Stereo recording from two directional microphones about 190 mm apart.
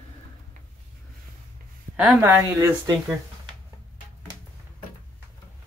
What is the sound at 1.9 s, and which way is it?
Speech, 10° right (ahead or behind).